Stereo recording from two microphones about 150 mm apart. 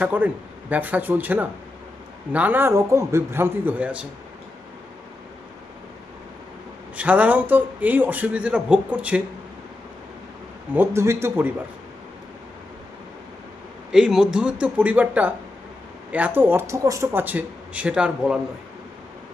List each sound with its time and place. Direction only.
0.0 s a man's voice: 10° right (ahead or behind)
6.9 s a man's voice: 10° right (ahead or behind)
10.8 s a man's voice: 20° right (ahead or behind)
13.9 s a man's voice: 5° right (ahead or behind)